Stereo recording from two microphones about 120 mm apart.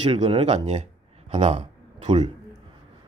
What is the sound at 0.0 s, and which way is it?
Speech, 55° right (ahead or behind).